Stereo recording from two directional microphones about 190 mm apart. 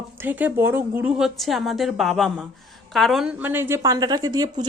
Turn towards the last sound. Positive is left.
turn(degrees=-20)  # may be behind; listen again after turning